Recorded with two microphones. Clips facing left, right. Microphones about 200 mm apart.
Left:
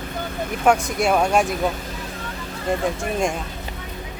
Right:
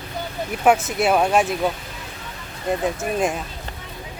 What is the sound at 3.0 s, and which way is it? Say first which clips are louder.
Speech: right 1 dB; 5° right (ahead or behind).